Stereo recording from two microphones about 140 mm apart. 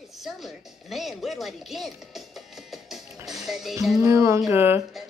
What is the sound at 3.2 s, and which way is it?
Music, centre (ahead or behind).